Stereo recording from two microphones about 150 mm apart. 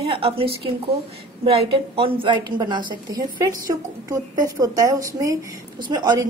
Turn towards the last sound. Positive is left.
turn(degrees=-30)  # may be behind; listen again after turning